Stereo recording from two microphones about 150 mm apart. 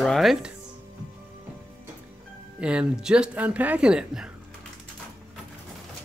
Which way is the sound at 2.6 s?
5° right (ahead or behind).